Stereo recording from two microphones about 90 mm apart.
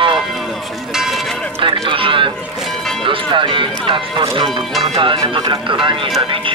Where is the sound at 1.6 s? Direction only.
70° right (ahead or behind).